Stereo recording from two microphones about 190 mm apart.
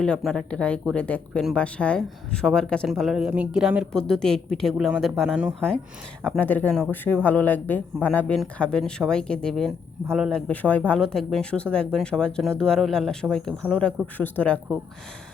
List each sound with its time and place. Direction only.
0.0 s speech: 5° left (ahead or behind)